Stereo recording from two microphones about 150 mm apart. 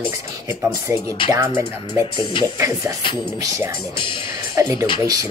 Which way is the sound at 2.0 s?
35° left (ahead or behind).